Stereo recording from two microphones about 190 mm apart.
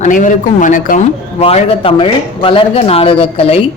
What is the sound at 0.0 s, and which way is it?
Speech, 45° left (ahead or behind).